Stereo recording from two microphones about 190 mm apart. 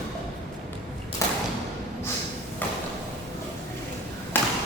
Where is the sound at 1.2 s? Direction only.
15° left (ahead or behind).